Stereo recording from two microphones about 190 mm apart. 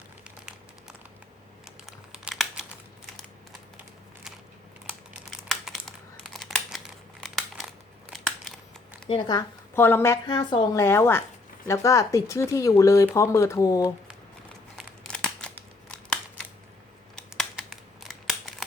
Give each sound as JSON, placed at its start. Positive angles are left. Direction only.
{"t": 1.6, "sound": "crumpling", "side_deg": -5}
{"t": 5.3, "sound": "crumpling", "side_deg": 0}
{"t": 9.0, "sound": "speech", "side_deg": 25}
{"t": 9.7, "sound": "a woman's voice", "side_deg": 10}
{"t": 14.8, "sound": "crumpling", "side_deg": 5}
{"t": 17.2, "sound": "a sound", "side_deg": 5}